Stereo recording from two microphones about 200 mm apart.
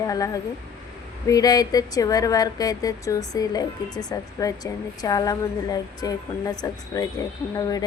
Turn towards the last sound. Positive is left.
turn(degrees=20)  # may be behind; listen again after turning